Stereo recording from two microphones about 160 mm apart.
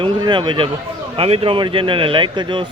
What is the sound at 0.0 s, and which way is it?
Speech, 30° right (ahead or behind).